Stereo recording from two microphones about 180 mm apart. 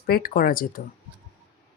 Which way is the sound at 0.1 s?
55° left (ahead or behind).